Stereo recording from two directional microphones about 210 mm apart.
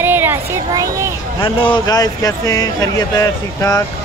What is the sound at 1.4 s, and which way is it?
Speech, 25° left (ahead or behind).